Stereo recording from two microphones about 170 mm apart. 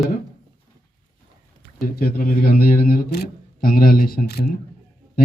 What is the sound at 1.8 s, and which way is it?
A man's voice, 60° left (ahead or behind).